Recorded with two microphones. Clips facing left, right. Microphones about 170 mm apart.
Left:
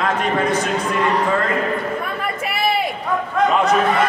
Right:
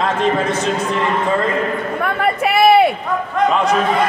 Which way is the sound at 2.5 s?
65° right (ahead or behind).